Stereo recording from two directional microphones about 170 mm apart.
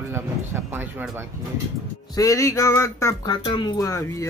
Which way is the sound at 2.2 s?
15° left (ahead or behind).